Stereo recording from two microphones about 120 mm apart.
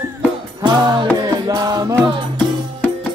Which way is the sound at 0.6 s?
35° right (ahead or behind).